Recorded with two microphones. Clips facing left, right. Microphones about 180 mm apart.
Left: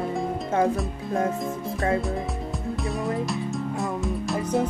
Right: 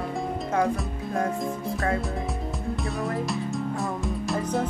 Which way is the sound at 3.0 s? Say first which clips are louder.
Left 1 dB; centre (ahead or behind).